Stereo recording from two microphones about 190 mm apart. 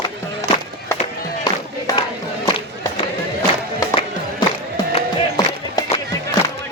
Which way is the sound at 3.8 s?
20° left (ahead or behind).